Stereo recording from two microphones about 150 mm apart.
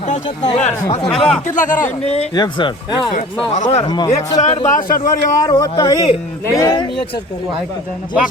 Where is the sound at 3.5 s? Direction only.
55° left (ahead or behind).